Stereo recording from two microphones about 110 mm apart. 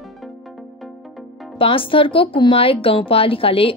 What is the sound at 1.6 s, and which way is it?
A woman's voice, 55° left (ahead or behind).